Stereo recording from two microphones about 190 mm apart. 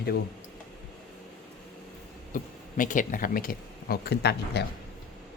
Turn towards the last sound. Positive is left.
turn(degrees=60)  # may be behind; listen again after turning